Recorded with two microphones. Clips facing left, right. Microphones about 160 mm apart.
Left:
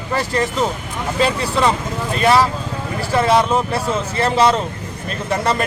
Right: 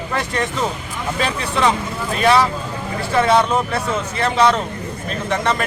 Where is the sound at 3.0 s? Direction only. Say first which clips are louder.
Even; 5° left (ahead or behind).